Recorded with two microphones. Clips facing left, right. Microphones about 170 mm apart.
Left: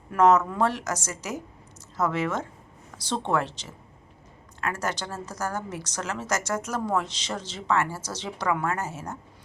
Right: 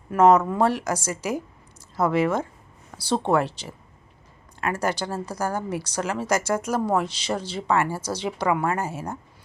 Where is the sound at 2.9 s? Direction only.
30° right (ahead or behind).